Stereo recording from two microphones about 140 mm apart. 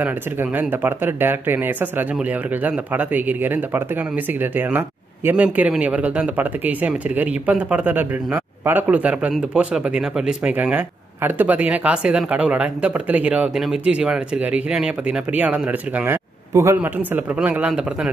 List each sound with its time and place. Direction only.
0.0 s speech: 15° right (ahead or behind)